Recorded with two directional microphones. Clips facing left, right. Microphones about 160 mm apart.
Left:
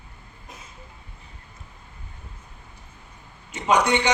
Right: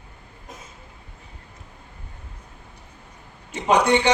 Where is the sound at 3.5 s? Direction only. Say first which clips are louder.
Right 2 dB; 30° right (ahead or behind).